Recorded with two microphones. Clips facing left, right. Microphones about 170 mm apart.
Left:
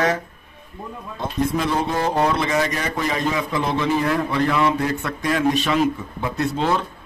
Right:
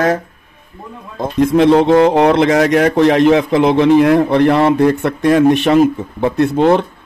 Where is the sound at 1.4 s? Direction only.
75° right (ahead or behind).